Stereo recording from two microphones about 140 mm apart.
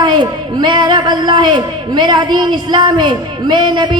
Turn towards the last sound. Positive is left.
turn(degrees=-35)  # may be behind; listen again after turning